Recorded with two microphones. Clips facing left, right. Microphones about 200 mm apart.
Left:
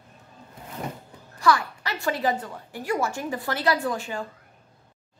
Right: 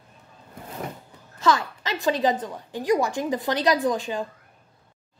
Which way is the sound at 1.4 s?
20° right (ahead or behind).